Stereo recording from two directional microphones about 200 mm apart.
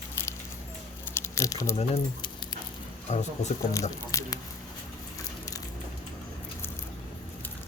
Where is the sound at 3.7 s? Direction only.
15° left (ahead or behind).